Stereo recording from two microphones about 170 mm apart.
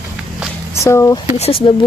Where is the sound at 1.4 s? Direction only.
35° left (ahead or behind).